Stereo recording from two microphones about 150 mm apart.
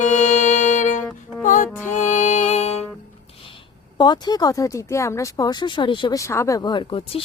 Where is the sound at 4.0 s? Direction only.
30° left (ahead or behind).